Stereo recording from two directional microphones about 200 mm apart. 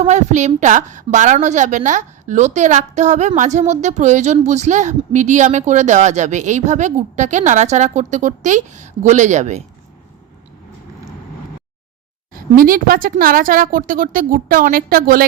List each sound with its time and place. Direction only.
0.0 s a woman's voice: 35° right (ahead or behind)
12.3 s a woman's voice: 45° right (ahead or behind)